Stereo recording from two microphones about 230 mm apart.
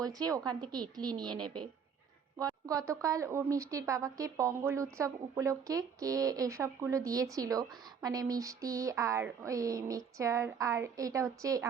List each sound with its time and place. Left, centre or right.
0.0 s a woman's voice: centre
2.6 s a woman's voice: centre